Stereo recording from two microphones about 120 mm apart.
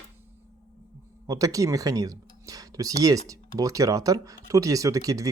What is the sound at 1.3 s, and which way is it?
Speech, 30° right (ahead or behind).